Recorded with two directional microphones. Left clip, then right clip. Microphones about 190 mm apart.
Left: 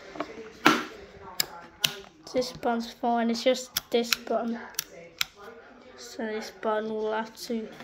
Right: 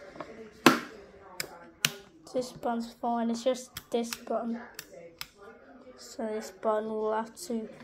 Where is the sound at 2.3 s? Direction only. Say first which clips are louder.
Left 4 dB; 10° left (ahead or behind).